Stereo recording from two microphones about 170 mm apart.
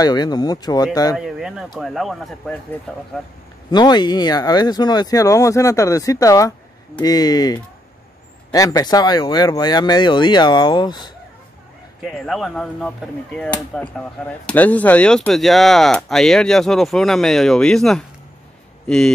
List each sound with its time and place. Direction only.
0.0 s speech: 25° left (ahead or behind)
1.1 s speech: 5° right (ahead or behind)
3.7 s speech: 25° left (ahead or behind)
12.0 s speech: centre (ahead or behind)